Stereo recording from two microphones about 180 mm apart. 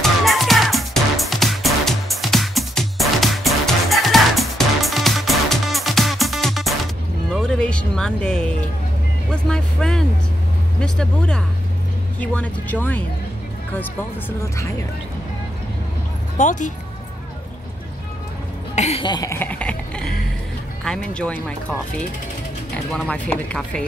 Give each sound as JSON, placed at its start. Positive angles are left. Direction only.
{"t": 0.0, "sound": "music", "side_deg": 0}
{"t": 9.3, "sound": "speech", "side_deg": 5}
{"t": 16.3, "sound": "speech", "side_deg": 45}
{"t": 18.8, "sound": "cough", "side_deg": 35}
{"t": 19.3, "sound": "music", "side_deg": 10}
{"t": 20.8, "sound": "speech", "side_deg": 5}